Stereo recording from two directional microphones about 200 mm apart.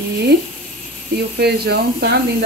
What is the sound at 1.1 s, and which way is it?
Speech, 55° right (ahead or behind).